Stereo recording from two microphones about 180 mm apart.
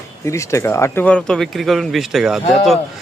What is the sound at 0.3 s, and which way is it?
A man's voice, 15° left (ahead or behind).